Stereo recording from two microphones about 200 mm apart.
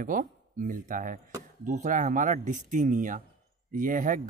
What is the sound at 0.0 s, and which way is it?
Speech, 40° right (ahead or behind).